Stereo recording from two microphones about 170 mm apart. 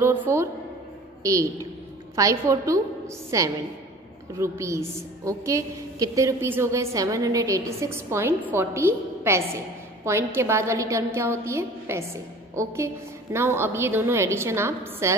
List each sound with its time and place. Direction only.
0.0 s a woman's voice: 15° right (ahead or behind)